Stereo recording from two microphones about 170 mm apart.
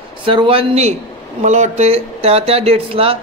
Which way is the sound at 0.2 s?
30° right (ahead or behind).